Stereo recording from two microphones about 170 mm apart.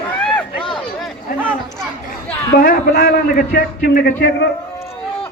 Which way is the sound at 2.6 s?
60° left (ahead or behind).